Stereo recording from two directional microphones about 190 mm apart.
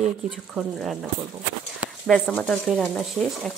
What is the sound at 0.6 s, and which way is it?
Speech, centre (ahead or behind).